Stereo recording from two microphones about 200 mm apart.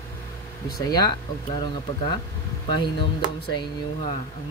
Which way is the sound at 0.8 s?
20° left (ahead or behind).